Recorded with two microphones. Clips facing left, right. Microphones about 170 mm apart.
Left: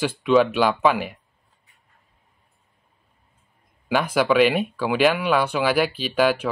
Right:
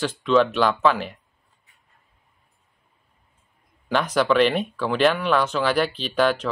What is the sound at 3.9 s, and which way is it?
Speech, 10° left (ahead or behind).